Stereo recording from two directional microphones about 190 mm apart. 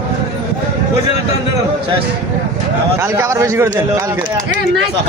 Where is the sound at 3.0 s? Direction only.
15° right (ahead or behind).